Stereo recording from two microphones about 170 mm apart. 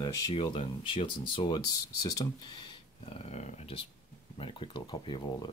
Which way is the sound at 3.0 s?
35° left (ahead or behind).